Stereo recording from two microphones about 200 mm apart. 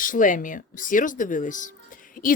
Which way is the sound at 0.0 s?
40° left (ahead or behind).